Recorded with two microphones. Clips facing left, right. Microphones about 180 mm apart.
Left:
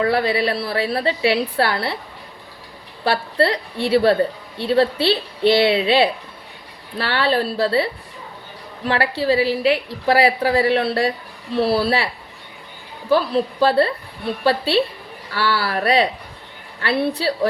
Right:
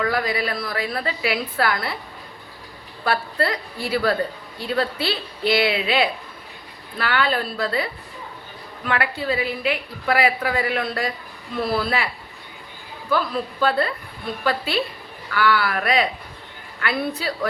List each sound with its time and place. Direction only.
0.0 s a woman's voice: 30° left (ahead or behind)
3.0 s a woman's voice: 30° left (ahead or behind)
13.1 s a woman's voice: 30° left (ahead or behind)